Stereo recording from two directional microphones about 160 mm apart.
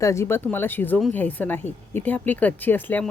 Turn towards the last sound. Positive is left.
turn(degrees=10)  # may be behind; listen again after turning